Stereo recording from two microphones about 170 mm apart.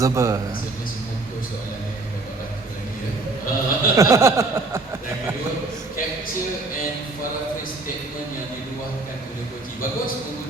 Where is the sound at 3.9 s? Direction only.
15° right (ahead or behind).